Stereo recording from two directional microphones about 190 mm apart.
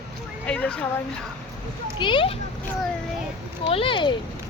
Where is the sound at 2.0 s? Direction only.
25° left (ahead or behind).